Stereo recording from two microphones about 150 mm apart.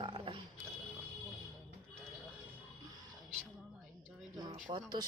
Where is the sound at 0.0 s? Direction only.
35° right (ahead or behind).